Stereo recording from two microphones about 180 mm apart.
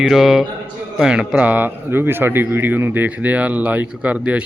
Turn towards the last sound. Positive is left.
turn(degrees=-5)  # may be behind; listen again after turning